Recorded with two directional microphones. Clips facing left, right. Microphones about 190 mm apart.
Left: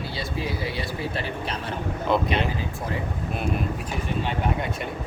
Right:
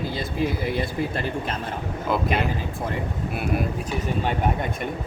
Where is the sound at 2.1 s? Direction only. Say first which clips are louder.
Left 2 dB; 5° right (ahead or behind).